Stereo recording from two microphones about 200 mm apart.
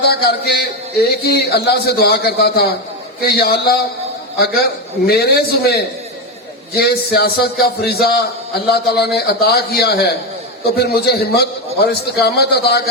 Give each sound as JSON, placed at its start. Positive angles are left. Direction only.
{"t": 0.0, "sound": "speech", "side_deg": 50}